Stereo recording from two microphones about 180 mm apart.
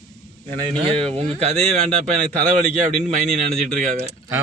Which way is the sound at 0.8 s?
35° right (ahead or behind).